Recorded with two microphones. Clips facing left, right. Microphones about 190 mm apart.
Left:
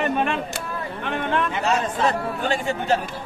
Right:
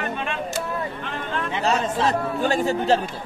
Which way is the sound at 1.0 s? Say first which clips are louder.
Left 5 dB; 60° left (ahead or behind).